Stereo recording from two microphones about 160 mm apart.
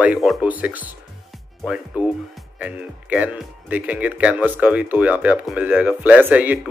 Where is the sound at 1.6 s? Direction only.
5° right (ahead or behind).